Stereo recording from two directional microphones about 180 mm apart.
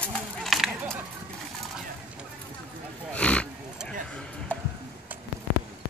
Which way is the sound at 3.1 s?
5° left (ahead or behind).